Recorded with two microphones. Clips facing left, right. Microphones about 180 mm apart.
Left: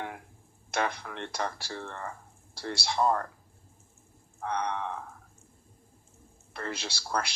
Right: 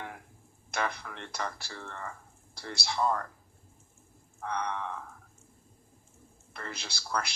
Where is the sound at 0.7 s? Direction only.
50° left (ahead or behind).